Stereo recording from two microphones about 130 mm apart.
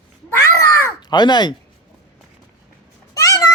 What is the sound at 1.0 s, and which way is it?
Speech, 35° left (ahead or behind).